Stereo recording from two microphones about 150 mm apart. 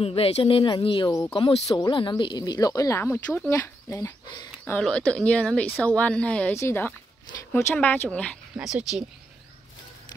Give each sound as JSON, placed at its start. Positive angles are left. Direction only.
{"t": 0.0, "sound": "speech", "side_deg": 40}
{"t": 4.8, "sound": "speech", "side_deg": 5}
{"t": 8.5, "sound": "speech", "side_deg": -5}